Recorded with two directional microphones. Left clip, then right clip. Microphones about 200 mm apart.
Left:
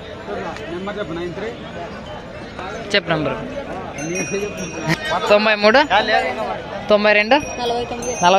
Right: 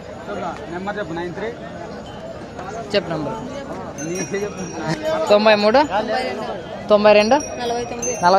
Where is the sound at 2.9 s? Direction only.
5° left (ahead or behind).